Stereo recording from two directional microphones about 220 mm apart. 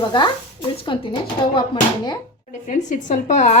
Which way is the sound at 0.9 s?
20° left (ahead or behind).